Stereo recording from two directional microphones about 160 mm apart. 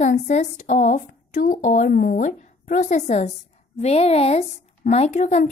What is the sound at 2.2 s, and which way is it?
A woman's voice, 50° left (ahead or behind).